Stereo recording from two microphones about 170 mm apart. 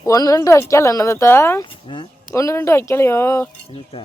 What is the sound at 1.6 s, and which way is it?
Speech, 30° left (ahead or behind).